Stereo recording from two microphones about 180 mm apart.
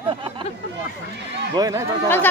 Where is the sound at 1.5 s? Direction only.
20° right (ahead or behind).